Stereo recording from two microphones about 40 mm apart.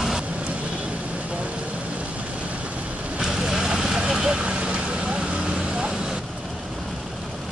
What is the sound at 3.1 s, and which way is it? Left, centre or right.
Vehicle, centre.